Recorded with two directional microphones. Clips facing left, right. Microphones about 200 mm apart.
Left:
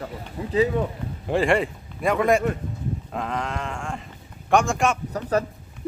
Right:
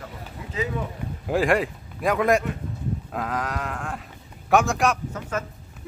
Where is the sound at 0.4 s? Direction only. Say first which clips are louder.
Left 10 dB; 35° left (ahead or behind).